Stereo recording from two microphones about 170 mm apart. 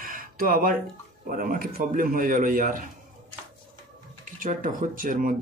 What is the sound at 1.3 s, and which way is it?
Speech, 55° right (ahead or behind).